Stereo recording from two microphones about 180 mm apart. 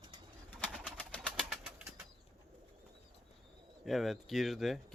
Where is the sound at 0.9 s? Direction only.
5° left (ahead or behind).